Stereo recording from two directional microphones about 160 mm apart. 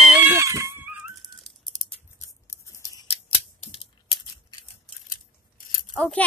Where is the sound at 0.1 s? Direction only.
15° right (ahead or behind).